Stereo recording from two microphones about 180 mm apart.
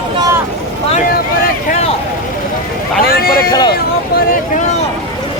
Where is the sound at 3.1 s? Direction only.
60° left (ahead or behind).